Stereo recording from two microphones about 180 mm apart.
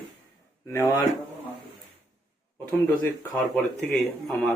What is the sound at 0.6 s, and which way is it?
Speech, 15° left (ahead or behind).